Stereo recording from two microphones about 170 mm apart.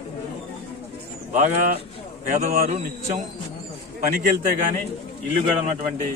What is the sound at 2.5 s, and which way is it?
Speech, 55° right (ahead or behind).